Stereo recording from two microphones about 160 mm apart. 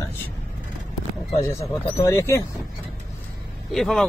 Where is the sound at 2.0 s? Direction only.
20° left (ahead or behind).